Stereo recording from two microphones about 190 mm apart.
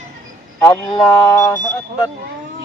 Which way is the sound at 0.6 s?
20° left (ahead or behind).